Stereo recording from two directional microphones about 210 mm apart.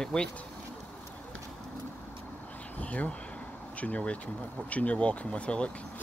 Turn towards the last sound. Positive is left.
turn(degrees=5)  # may be behind; listen again after turning